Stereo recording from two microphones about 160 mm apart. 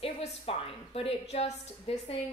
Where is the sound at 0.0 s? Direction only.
35° left (ahead or behind).